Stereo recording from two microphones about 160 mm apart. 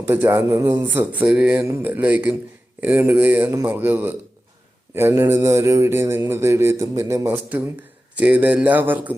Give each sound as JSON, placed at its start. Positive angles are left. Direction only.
{"t": 0.1, "sound": "mantra", "side_deg": -10}